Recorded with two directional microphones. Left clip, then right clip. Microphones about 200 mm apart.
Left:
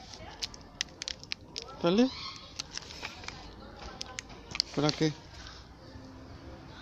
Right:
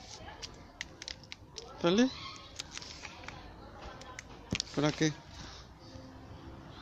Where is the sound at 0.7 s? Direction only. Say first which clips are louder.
Left 7 dB; 45° left (ahead or behind).